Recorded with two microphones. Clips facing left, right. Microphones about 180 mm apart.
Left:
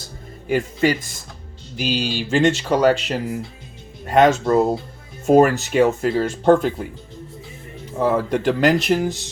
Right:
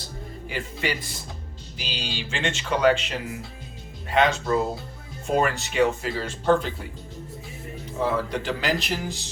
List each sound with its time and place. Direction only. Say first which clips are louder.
0.4 s speech: left 11 dB; 45° left (ahead or behind)
8.0 s speech: left 7 dB; 45° left (ahead or behind)